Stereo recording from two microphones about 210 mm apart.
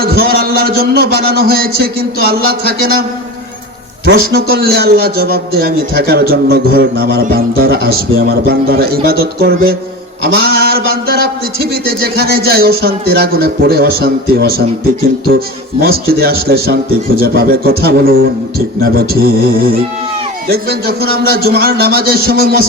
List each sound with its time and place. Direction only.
0.0 s a man's voice: 45° right (ahead or behind)
4.0 s a man's voice: 45° right (ahead or behind)
20.5 s a man's voice: 45° right (ahead or behind)